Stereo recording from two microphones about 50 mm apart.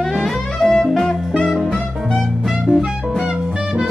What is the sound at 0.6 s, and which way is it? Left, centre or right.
Jazz, centre.